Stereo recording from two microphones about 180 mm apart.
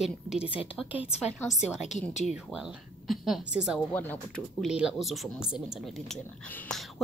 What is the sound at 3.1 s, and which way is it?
A woman's voice, centre (ahead or behind).